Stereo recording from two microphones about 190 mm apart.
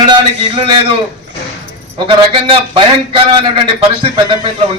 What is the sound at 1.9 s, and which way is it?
A man's voice, 25° right (ahead or behind).